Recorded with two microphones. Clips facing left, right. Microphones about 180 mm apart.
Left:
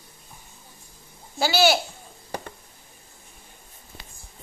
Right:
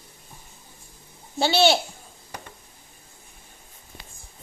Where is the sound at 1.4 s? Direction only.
25° right (ahead or behind).